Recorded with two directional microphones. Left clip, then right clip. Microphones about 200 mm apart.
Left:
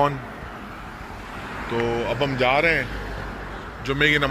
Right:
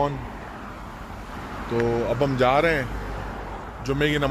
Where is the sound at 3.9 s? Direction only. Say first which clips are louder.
Left 4 dB; 20° right (ahead or behind).